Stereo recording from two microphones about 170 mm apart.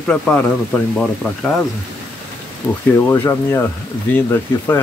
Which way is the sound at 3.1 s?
15° left (ahead or behind).